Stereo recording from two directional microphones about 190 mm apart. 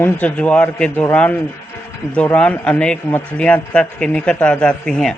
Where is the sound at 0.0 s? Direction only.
5° left (ahead or behind).